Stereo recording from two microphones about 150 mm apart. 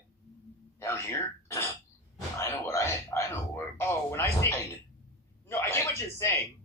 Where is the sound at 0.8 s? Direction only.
20° left (ahead or behind).